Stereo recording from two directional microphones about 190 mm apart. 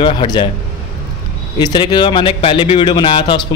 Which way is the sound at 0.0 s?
25° left (ahead or behind).